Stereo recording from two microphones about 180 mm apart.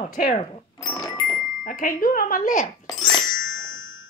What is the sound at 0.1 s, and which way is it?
Speech, 50° left (ahead or behind).